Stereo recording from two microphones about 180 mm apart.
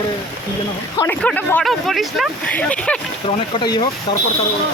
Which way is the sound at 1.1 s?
10° left (ahead or behind).